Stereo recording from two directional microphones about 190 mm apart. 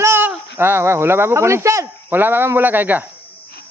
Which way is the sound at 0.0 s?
10° right (ahead or behind).